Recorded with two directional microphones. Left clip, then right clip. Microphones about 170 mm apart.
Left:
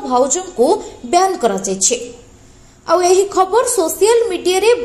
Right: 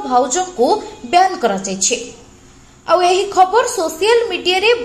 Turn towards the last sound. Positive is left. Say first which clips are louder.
# left 1 dB
turn(degrees=35)  # may be behind; listen again after turning